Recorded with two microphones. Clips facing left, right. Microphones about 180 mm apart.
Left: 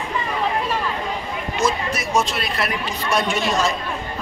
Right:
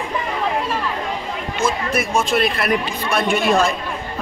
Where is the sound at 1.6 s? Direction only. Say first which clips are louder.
Right 2 dB; 55° right (ahead or behind).